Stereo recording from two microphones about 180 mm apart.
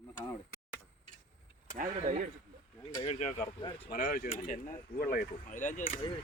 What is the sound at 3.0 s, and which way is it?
Speech, 40° left (ahead or behind).